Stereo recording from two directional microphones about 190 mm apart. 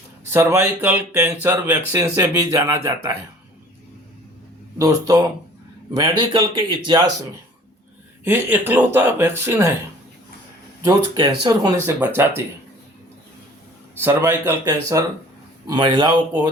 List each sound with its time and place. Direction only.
0.3 s speech: 10° right (ahead or behind)
4.8 s speech: 20° right (ahead or behind)
8.2 s speech: 10° right (ahead or behind)
10.8 s speech: 20° right (ahead or behind)
11.9 s speech: 10° right (ahead or behind)
14.0 s speech: 10° right (ahead or behind)